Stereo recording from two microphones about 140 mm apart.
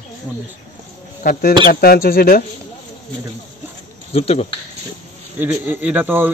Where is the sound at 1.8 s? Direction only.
90° left.